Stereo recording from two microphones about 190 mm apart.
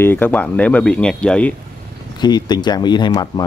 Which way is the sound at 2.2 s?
20° left (ahead or behind).